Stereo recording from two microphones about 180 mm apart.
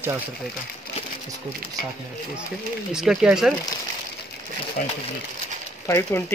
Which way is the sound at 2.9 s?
5° right (ahead or behind).